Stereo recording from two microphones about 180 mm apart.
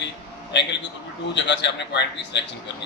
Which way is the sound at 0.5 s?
75° left (ahead or behind).